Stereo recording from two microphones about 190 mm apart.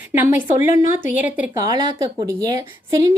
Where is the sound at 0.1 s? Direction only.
10° right (ahead or behind).